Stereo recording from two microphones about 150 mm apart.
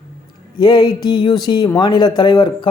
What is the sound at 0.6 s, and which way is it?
A man's voice, 30° left (ahead or behind).